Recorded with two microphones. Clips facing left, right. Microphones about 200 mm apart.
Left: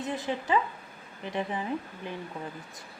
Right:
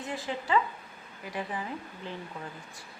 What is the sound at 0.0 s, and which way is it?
Speech, 20° left (ahead or behind).